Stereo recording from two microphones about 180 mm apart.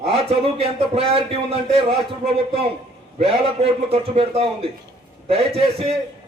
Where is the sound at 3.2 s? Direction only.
35° right (ahead or behind).